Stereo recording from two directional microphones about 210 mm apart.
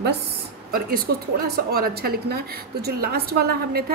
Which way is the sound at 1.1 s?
55° right (ahead or behind).